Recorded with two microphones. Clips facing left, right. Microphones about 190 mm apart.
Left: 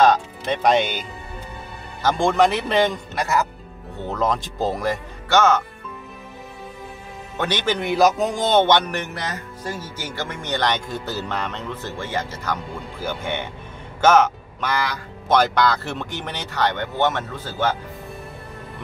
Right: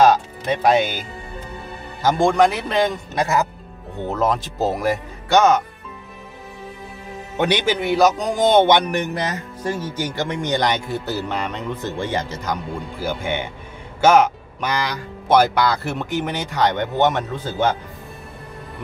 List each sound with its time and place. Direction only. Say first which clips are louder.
0.0 s speech: right 2 dB; 5° right (ahead or behind)
2.0 s speech: right 2 dB; centre (ahead or behind)
3.2 s speech: right 3 dB; 20° right (ahead or behind)
4.1 s speech: right 2 dB; 5° right (ahead or behind)
7.3 s speech: right 4 dB; 15° right (ahead or behind)
8.4 s speech: right 5 dB; 10° right (ahead or behind)